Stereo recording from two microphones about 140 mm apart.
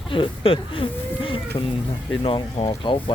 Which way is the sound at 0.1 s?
40° left (ahead or behind).